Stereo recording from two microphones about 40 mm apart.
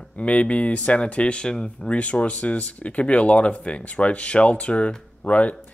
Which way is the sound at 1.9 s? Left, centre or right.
Left.